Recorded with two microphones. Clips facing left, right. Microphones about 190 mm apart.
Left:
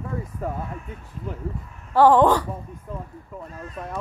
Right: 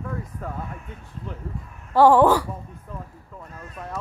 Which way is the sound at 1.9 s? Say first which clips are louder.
Even; 10° right (ahead or behind).